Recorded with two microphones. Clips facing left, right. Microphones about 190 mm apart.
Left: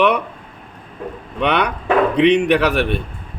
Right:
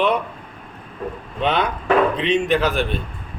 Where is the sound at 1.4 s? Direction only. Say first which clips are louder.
Left 2 dB; 70° left (ahead or behind).